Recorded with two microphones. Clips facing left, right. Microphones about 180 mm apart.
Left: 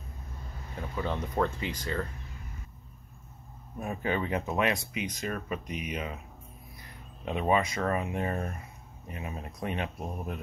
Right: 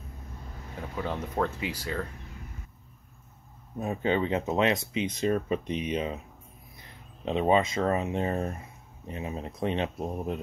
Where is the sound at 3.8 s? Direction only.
25° right (ahead or behind).